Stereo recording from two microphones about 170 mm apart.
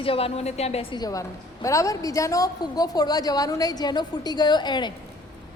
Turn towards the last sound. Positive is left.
turn(degrees=25)  # may be behind; listen again after turning